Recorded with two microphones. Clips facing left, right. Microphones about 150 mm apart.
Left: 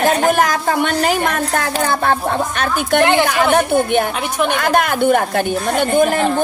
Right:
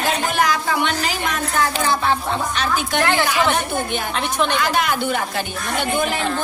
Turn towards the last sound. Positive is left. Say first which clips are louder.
# left 7 dB
turn(degrees=50)  # may be behind; listen again after turning